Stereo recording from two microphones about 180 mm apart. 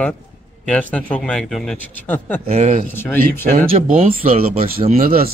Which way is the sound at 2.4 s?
40° right (ahead or behind).